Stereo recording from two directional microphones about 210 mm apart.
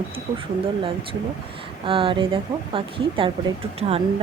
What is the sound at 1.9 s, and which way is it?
Speech, 25° right (ahead or behind).